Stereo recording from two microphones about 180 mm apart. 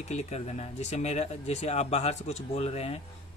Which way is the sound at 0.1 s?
40° left (ahead or behind).